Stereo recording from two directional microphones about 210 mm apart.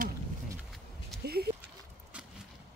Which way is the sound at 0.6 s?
Centre (ahead or behind).